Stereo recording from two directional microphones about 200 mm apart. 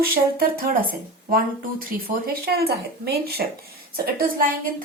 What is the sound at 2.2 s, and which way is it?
A woman's voice, 50° right (ahead or behind).